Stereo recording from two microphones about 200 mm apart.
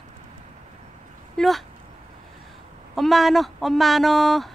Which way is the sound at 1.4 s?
Centre (ahead or behind).